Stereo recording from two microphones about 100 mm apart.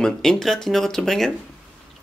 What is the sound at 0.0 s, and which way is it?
Speech, 5° left (ahead or behind).